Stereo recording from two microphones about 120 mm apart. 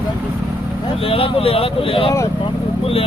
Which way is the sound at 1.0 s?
50° left (ahead or behind).